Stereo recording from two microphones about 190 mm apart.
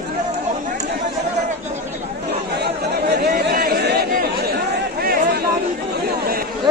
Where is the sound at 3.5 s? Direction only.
55° right (ahead or behind).